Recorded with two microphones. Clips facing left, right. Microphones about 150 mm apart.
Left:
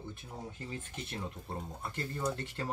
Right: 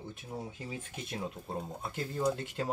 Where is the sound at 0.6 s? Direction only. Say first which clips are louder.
Right 1 dB; 10° right (ahead or behind).